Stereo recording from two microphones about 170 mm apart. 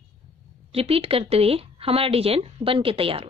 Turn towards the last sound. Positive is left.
turn(degrees=-35)  # may be behind; listen again after turning